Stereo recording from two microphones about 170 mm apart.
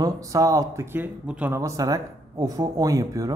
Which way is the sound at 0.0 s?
20° right (ahead or behind).